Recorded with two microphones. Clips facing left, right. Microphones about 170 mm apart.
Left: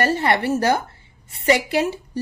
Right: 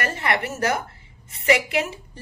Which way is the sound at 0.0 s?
30° left (ahead or behind).